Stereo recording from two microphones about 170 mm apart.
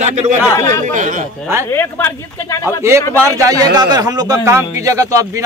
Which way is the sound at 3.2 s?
20° right (ahead or behind).